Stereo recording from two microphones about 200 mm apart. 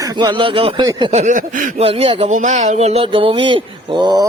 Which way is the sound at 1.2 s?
40° right (ahead or behind).